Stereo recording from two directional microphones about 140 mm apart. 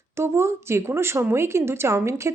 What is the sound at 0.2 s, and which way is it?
Speech, 20° right (ahead or behind).